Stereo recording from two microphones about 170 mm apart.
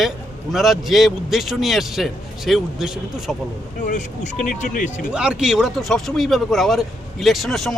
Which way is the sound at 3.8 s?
45° left (ahead or behind).